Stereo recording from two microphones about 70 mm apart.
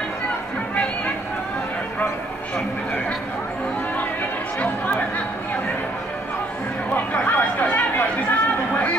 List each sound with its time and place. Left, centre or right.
4.6 s chatter: left
6.9 s chatter: left